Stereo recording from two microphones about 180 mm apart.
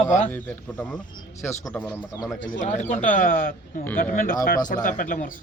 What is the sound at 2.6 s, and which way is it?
Speech, 40° left (ahead or behind).